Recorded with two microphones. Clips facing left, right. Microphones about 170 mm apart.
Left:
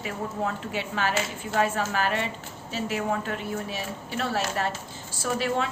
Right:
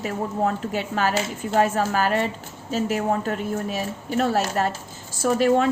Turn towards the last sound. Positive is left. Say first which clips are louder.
# right 8 dB
turn(degrees=-45)  # may be behind; listen again after turning